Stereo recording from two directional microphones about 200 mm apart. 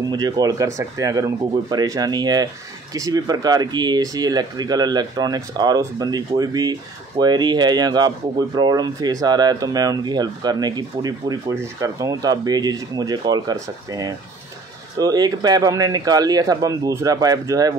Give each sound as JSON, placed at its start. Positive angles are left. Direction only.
{"t": 0.1, "sound": "speech", "side_deg": -20}